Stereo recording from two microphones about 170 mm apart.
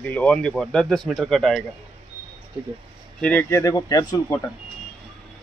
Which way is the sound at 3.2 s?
10° left (ahead or behind).